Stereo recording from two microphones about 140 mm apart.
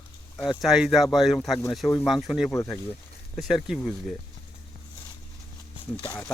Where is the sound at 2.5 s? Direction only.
20° left (ahead or behind).